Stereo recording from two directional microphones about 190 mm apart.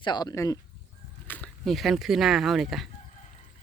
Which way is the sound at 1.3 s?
5° left (ahead or behind).